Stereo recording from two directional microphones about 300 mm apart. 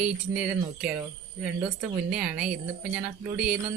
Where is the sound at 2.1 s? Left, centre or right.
Centre.